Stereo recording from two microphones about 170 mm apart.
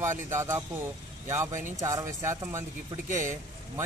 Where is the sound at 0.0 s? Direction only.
15° right (ahead or behind).